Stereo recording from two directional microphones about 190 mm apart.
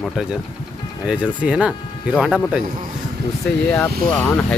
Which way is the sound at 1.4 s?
5° right (ahead or behind).